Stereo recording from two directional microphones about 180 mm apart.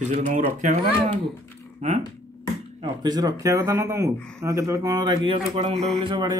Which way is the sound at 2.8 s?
25° right (ahead or behind).